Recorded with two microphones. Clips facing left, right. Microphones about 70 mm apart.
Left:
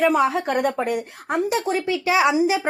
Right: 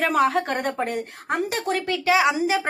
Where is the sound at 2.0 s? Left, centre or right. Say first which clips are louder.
Even; left.